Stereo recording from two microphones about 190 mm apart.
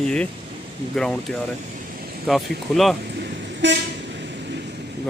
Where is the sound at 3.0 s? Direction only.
60° right (ahead or behind).